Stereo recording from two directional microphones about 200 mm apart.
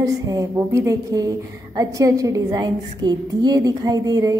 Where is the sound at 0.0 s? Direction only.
15° right (ahead or behind).